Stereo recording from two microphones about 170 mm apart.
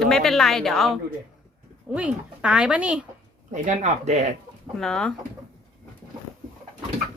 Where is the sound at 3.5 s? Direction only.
45° right (ahead or behind).